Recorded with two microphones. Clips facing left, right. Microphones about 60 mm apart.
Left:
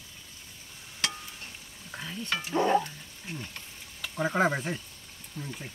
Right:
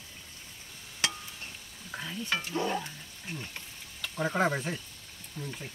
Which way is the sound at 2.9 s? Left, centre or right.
Centre.